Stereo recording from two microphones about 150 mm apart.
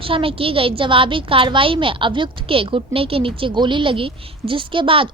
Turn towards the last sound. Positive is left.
turn(degrees=-35)  # may be behind; listen again after turning